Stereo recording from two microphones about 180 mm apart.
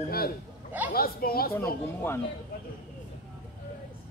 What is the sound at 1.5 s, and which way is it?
Speech, 15° left (ahead or behind).